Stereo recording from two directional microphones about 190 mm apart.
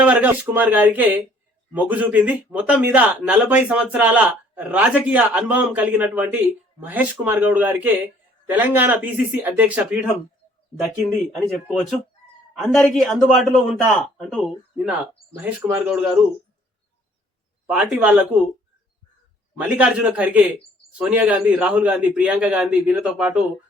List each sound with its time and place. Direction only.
0.0 s a man's voice: 10° right (ahead or behind)
17.7 s a man's voice: 5° right (ahead or behind)
19.5 s a man's voice: 5° right (ahead or behind)